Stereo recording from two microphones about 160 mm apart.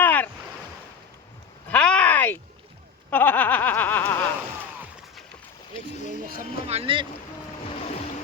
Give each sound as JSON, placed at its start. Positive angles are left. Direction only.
{"t": 0.0, "sound": "boat", "side_deg": 10}
{"t": 1.7, "sound": "a sound", "side_deg": 5}
{"t": 3.1, "sound": "snicker", "side_deg": 10}
{"t": 6.2, "sound": "a sound", "side_deg": -65}
{"t": 6.7, "sound": "boat", "side_deg": -35}
{"t": 7.7, "sound": "boat", "side_deg": 40}